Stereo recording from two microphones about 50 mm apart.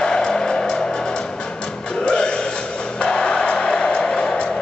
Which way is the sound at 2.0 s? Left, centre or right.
Centre.